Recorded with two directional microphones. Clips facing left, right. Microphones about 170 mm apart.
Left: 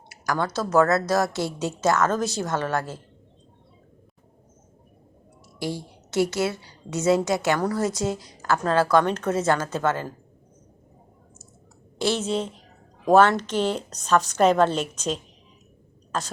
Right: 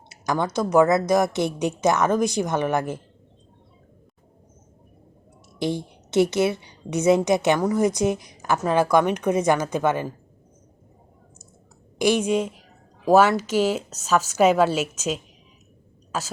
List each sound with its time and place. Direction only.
0.1 s a woman's voice: 20° right (ahead or behind)
5.5 s a woman's voice: 20° right (ahead or behind)
11.9 s a woman's voice: 15° right (ahead or behind)